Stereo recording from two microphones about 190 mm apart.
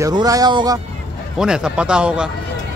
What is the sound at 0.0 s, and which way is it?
Speech, 20° right (ahead or behind).